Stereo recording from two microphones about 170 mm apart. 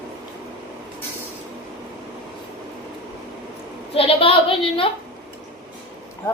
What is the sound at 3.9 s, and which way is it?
A woman's voice, 35° left (ahead or behind).